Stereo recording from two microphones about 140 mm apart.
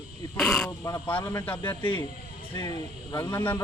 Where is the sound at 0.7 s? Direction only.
20° left (ahead or behind).